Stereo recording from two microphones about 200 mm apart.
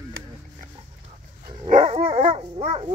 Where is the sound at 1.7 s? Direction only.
30° right (ahead or behind).